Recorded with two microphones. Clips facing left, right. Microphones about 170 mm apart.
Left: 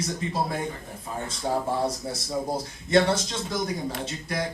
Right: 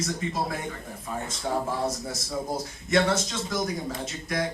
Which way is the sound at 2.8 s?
30° left (ahead or behind).